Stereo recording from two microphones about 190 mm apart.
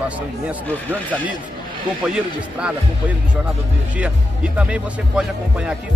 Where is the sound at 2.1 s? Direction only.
5° right (ahead or behind).